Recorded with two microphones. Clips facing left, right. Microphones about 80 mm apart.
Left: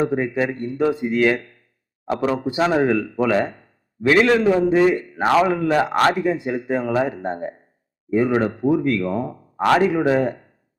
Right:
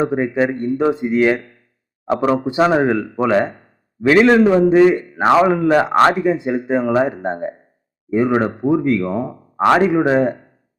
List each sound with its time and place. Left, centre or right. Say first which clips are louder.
0.0 s a man's voice: right 3 dB; right